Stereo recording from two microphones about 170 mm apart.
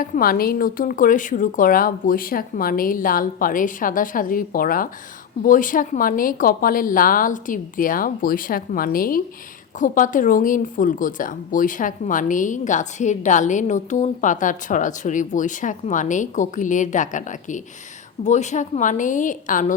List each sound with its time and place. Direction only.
0.0 s speech: 55° left (ahead or behind)